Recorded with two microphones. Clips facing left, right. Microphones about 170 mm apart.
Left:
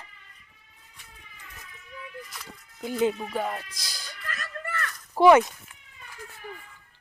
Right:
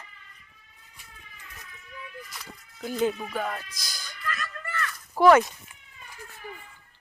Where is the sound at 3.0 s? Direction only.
20° left (ahead or behind); by 4.9 s 40° left (ahead or behind).